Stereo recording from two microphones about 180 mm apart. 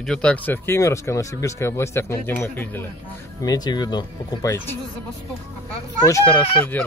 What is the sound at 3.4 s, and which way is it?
Speech, 20° left (ahead or behind).